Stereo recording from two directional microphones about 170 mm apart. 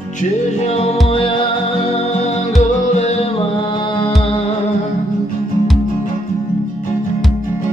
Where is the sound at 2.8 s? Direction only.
40° left (ahead or behind).